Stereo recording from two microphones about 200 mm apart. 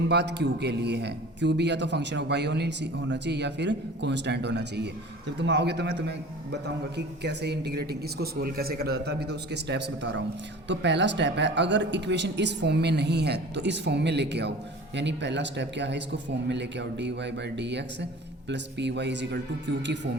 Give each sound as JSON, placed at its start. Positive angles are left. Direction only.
{"t": 0.1, "sound": "a man's voice", "side_deg": -60}